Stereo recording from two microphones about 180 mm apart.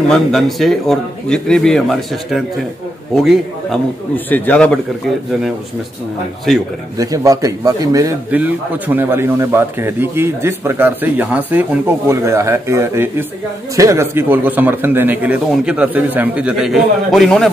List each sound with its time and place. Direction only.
0.1 s speech: centre (ahead or behind)
4.3 s a man's voice: 5° left (ahead or behind)
6.5 s speech: centre (ahead or behind)
7.0 s a man's voice: 20° right (ahead or behind); by 17.5 s centre (ahead or behind)